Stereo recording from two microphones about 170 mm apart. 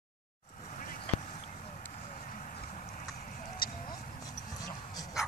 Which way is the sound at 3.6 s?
60° left (ahead or behind).